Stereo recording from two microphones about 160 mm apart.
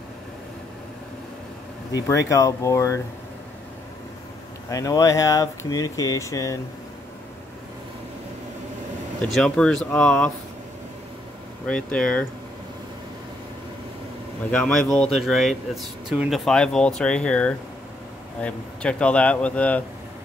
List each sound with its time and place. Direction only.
1.9 s speech: 20° left (ahead or behind)
4.6 s speech: 20° left (ahead or behind)
9.2 s speech: 5° left (ahead or behind)
11.6 s speech: 5° left (ahead or behind)
14.5 s speech: 5° left (ahead or behind)